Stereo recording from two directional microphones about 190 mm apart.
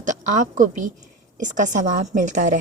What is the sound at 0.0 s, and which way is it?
Speech, 40° right (ahead or behind).